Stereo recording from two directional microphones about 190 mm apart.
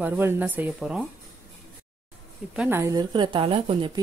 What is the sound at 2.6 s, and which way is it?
A woman's voice, 10° right (ahead or behind).